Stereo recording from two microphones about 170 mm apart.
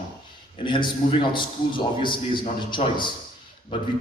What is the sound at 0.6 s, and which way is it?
A man's voice, 30° left (ahead or behind).